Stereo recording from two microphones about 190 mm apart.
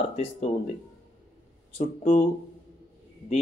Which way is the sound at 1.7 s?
45° left (ahead or behind).